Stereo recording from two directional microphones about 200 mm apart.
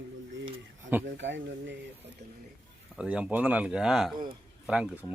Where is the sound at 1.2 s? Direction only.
65° right (ahead or behind).